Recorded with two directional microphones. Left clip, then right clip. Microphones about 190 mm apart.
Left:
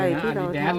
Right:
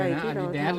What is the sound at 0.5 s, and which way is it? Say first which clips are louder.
Speech: left 2 dB; 55° right (ahead or behind).